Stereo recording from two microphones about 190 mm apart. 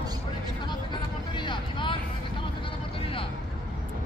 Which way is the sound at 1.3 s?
25° left (ahead or behind).